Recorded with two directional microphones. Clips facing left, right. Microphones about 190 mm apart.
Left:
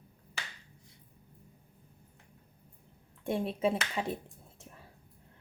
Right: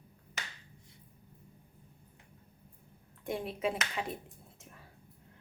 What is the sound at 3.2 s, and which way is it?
Speech, 30° left (ahead or behind).